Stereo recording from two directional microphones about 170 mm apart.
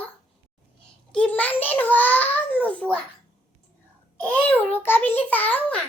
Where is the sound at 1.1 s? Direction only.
5° left (ahead or behind).